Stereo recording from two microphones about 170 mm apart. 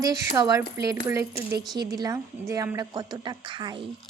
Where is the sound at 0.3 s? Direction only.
20° right (ahead or behind).